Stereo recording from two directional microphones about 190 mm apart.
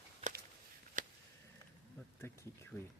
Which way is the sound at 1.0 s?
45° right (ahead or behind).